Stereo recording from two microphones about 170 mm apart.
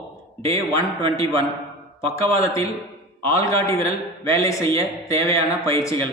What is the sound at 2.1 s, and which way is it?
Speech, 15° left (ahead or behind).